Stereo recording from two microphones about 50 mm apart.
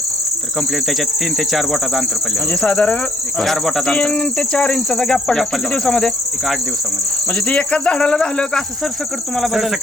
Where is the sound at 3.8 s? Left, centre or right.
Left.